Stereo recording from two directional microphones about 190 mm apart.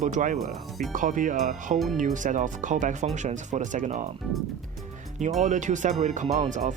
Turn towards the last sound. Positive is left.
turn(degrees=-40)  # may be behind; listen again after turning